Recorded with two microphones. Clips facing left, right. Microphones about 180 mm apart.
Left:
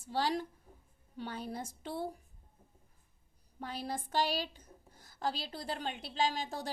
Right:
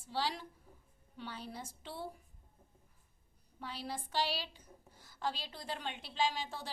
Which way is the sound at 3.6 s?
45° left (ahead or behind).